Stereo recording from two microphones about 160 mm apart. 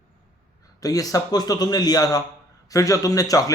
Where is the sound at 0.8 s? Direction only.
20° left (ahead or behind).